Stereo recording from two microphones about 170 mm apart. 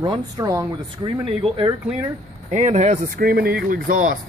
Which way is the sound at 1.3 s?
30° right (ahead or behind).